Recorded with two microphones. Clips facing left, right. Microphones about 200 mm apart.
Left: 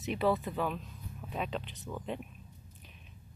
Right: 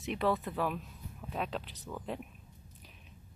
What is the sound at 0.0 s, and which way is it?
Speech, centre (ahead or behind).